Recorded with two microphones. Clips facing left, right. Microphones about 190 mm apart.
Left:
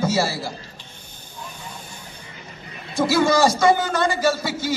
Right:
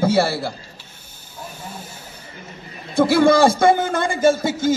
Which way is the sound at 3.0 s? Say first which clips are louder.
Right 4 dB; 55° right (ahead or behind).